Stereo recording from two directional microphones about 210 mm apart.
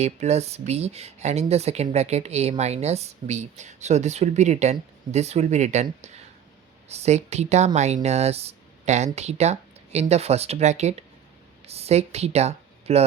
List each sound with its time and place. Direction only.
0.0 s speech: 30° right (ahead or behind)